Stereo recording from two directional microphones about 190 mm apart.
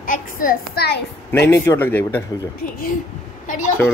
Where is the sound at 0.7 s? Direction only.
55° left (ahead or behind).